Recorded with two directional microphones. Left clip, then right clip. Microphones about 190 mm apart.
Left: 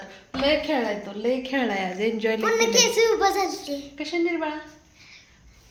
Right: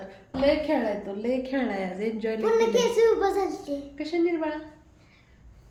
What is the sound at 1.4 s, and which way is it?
Speech, 5° left (ahead or behind).